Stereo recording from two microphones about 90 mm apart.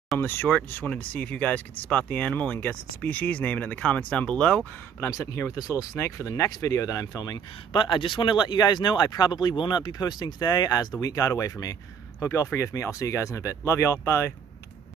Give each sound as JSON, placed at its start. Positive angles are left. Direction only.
{"t": 0.2, "sound": "speech", "side_deg": 25}
{"t": 5.1, "sound": "speech", "side_deg": 35}
{"t": 7.8, "sound": "speech", "side_deg": 65}